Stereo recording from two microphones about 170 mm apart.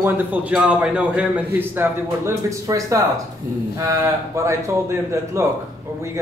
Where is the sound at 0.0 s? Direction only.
10° right (ahead or behind).